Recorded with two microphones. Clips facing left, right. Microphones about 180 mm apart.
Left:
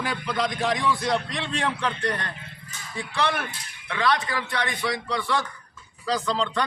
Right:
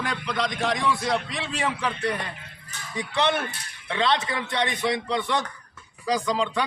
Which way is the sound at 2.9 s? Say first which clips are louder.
Right 2 dB; 20° right (ahead or behind).